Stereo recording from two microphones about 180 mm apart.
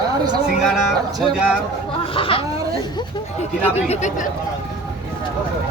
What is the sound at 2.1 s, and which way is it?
Speech, 30° left (ahead or behind).